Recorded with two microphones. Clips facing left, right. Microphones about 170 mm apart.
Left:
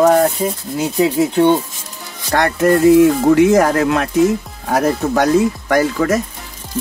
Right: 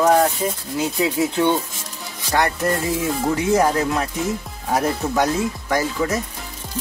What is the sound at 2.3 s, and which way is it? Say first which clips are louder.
Speech: left 4 dB; 65° left (ahead or behind).